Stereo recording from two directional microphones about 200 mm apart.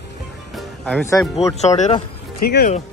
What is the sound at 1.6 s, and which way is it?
Speech, 35° left (ahead or behind).